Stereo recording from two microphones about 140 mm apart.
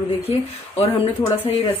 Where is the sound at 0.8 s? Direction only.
45° left (ahead or behind).